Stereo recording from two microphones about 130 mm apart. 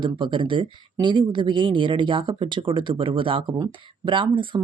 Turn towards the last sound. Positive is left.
turn(degrees=-40)  # may be behind; listen again after turning